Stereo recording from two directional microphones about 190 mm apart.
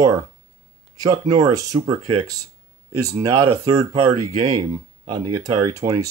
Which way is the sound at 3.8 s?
35° right (ahead or behind).